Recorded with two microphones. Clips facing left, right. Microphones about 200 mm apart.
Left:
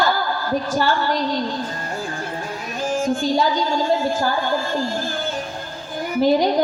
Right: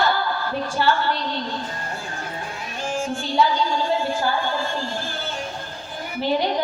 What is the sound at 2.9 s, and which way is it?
A woman's voice, 40° left (ahead or behind).